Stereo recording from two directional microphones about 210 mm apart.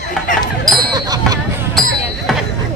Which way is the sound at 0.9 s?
20° right (ahead or behind).